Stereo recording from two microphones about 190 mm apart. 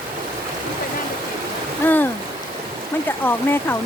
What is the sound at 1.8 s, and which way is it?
Speech, 10° left (ahead or behind).